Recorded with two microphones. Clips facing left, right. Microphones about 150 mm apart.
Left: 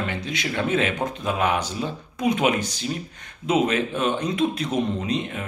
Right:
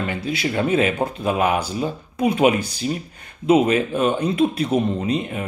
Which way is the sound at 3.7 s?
10° right (ahead or behind).